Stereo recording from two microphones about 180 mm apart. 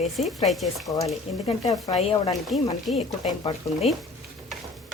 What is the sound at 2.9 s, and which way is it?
Speech, 35° left (ahead or behind).